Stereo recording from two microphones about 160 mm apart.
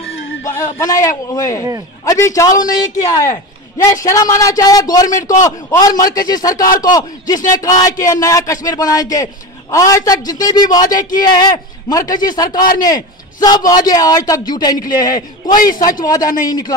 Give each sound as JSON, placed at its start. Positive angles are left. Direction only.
{"t": 0.6, "sound": "a man's voice", "side_deg": 20}